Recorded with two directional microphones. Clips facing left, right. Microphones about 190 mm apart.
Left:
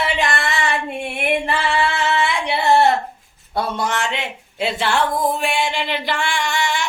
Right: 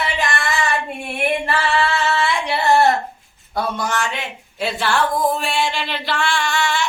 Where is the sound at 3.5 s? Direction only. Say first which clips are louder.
Left 1 dB; 20° left (ahead or behind).